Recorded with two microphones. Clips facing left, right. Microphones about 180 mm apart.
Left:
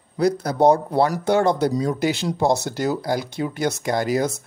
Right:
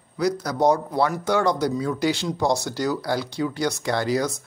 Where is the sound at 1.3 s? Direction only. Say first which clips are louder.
Left 3 dB; 55° left (ahead or behind).